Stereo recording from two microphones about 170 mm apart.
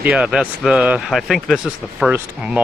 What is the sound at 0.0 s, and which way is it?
Speech, 5° right (ahead or behind).